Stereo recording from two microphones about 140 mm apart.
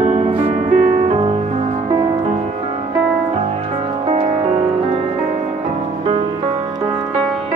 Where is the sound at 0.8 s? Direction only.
80° right.